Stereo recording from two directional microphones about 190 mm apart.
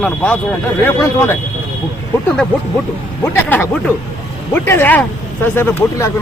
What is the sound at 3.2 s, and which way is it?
Speech, 10° left (ahead or behind).